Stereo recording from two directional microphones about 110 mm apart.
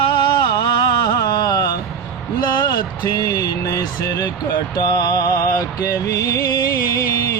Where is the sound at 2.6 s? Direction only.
35° left (ahead or behind).